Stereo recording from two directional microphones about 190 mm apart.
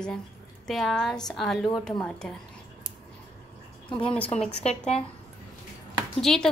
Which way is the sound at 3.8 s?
25° left (ahead or behind).